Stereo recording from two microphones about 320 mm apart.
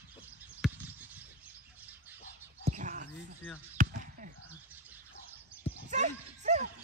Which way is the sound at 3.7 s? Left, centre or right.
Right.